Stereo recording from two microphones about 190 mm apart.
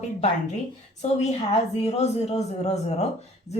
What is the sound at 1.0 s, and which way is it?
A woman's voice, 35° left (ahead or behind).